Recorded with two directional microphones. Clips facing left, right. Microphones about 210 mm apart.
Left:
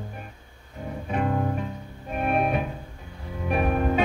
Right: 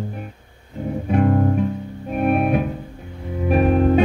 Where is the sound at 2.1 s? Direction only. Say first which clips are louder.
Right 6 dB; 55° right (ahead or behind).